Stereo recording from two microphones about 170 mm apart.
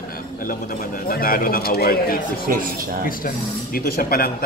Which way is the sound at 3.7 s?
60° left (ahead or behind).